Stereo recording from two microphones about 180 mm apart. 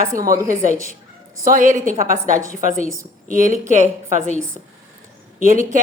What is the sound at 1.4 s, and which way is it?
A woman's voice, 50° right (ahead or behind).